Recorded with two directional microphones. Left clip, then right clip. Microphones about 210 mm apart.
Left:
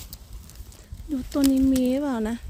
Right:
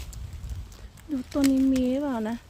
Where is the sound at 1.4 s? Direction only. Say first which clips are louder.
Left 2 dB; 20° left (ahead or behind).